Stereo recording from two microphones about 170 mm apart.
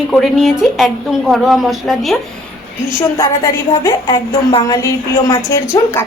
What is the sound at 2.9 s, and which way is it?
A woman's voice, 20° left (ahead or behind).